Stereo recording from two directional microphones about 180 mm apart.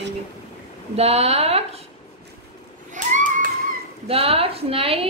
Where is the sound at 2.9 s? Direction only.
45° right (ahead or behind).